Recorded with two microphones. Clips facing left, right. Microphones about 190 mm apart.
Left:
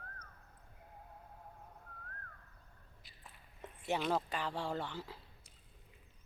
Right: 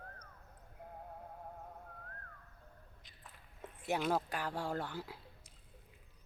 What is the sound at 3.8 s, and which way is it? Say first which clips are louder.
Speech: right 1 dB; 5° right (ahead or behind).